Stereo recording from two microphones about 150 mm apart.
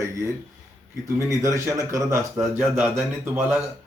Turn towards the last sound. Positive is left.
turn(degrees=-15)  # may be behind; listen again after turning